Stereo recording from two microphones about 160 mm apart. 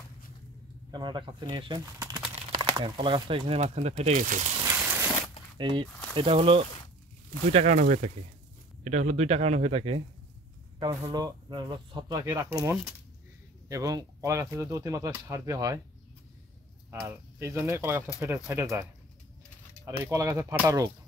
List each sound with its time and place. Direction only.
0.9 s speech: 30° right (ahead or behind)
1.9 s a sound: 20° right (ahead or behind)
2.5 s speech: 30° right (ahead or behind)
4.1 s speech: 55° right (ahead or behind)
4.6 s a sound: 10° right (ahead or behind)
5.6 s speech: 30° right (ahead or behind)
7.5 s speech: 45° right (ahead or behind)
10.8 s speech: 25° right (ahead or behind)
17.0 s speech: 15° right (ahead or behind)
20.0 s speech: 20° right (ahead or behind)